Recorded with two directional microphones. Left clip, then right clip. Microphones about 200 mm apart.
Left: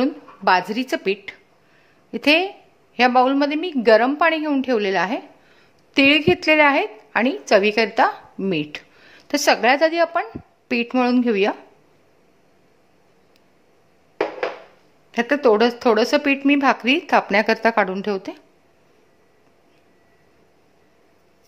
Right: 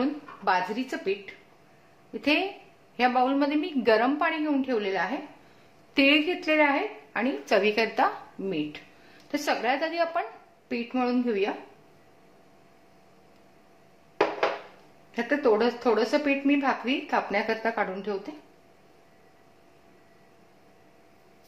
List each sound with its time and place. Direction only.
0.0 s a woman's voice: 45° left (ahead or behind)
5.9 s a woman's voice: 40° left (ahead or behind)
9.3 s a woman's voice: 50° left (ahead or behind)
10.7 s a woman's voice: 50° left (ahead or behind)
15.0 s a woman's voice: 50° left (ahead or behind)